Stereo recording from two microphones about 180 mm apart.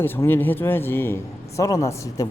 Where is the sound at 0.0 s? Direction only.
10° left (ahead or behind).